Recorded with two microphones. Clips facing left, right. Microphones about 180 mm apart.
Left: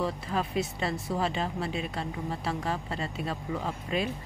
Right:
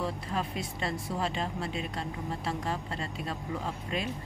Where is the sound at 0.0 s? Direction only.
Centre (ahead or behind).